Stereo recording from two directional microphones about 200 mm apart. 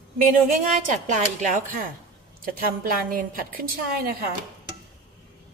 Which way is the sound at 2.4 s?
45° right (ahead or behind).